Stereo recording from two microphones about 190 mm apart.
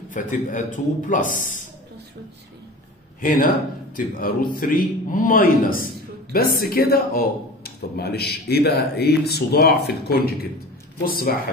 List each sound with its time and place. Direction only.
0.1 s a man's voice: 45° left (ahead or behind)
3.2 s a man's voice: 45° left (ahead or behind)